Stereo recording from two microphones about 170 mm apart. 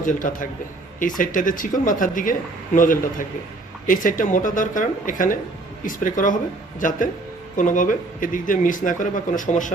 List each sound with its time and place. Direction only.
0.0 s speech: 50° left (ahead or behind)